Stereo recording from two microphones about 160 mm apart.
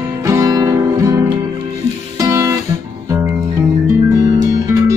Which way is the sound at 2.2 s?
20° right (ahead or behind).